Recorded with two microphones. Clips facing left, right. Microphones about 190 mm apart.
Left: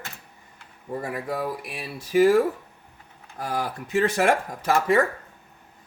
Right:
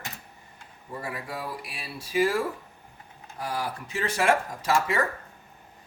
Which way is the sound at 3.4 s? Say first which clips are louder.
Left 3 dB; 50° left (ahead or behind).